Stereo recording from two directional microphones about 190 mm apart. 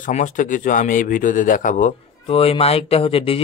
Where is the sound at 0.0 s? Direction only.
40° left (ahead or behind).